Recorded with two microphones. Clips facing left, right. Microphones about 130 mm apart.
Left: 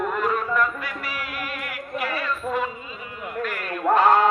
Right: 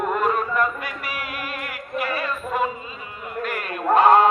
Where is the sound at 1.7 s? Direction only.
45° right (ahead or behind).